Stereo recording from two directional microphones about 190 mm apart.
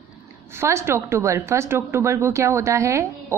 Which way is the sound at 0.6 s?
15° right (ahead or behind).